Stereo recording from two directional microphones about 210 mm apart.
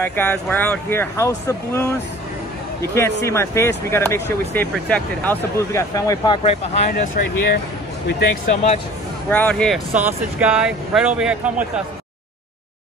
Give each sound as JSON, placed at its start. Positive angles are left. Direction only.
{"t": 0.0, "sound": "speech", "side_deg": 10}
{"t": 6.9, "sound": "speech", "side_deg": 40}
{"t": 9.3, "sound": "speech", "side_deg": 5}
{"t": 9.9, "sound": "speech", "side_deg": -5}